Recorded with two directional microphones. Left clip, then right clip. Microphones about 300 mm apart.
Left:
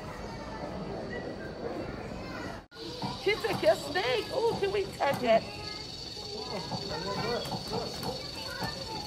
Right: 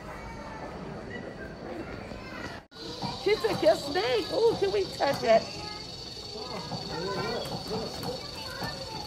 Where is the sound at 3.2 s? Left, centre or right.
Right.